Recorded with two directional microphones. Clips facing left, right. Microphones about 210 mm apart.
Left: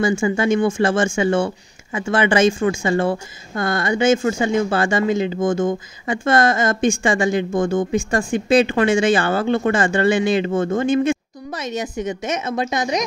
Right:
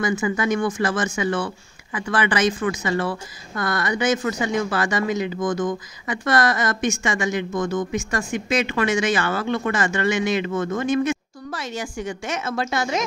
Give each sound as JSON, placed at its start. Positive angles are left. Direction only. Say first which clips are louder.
{"t": 0.0, "sound": "speech", "louder": "left 4 dB", "side_deg": 30}